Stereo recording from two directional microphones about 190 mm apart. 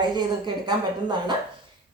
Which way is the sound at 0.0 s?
25° right (ahead or behind).